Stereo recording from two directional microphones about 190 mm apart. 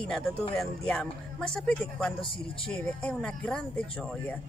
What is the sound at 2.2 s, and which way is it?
Speech, 25° left (ahead or behind).